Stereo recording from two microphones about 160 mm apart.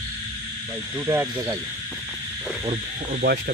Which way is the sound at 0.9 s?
15° right (ahead or behind).